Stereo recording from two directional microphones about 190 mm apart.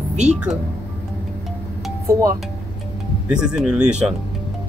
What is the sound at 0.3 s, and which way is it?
Speech, 5° right (ahead or behind).